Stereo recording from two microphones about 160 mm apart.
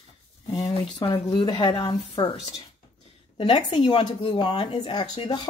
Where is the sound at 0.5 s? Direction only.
30° left (ahead or behind).